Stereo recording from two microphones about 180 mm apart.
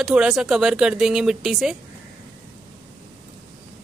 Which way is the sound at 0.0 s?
5° right (ahead or behind).